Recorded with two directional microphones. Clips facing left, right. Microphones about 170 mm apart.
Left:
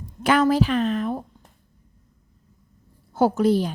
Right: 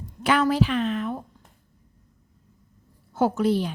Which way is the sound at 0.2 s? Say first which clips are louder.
Left 3 dB; 45° left (ahead or behind).